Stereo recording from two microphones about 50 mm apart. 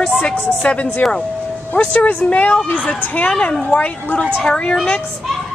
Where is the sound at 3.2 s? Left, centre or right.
Centre.